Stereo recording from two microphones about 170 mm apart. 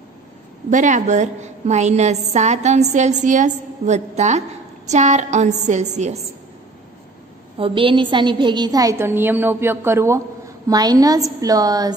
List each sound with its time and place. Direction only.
0.7 s a woman's voice: 45° right (ahead or behind)
7.5 s a woman's voice: 30° right (ahead or behind)